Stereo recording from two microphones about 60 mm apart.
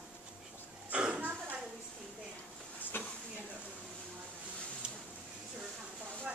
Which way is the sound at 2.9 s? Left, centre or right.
Left.